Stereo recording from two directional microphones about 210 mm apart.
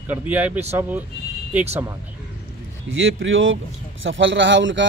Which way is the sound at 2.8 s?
70° right (ahead or behind).